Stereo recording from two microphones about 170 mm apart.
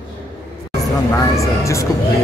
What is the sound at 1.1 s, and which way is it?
Speech, 15° left (ahead or behind).